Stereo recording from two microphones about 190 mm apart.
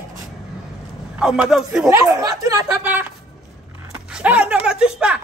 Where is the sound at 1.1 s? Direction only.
Centre (ahead or behind).